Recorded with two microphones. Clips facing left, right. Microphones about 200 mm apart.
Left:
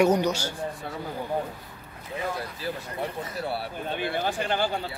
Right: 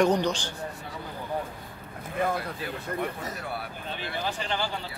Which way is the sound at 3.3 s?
30° left (ahead or behind).